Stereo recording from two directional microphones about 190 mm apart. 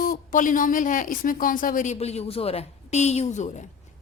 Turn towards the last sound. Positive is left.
turn(degrees=35)  # may be behind; listen again after turning